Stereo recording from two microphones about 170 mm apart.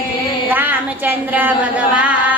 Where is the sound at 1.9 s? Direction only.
10° right (ahead or behind).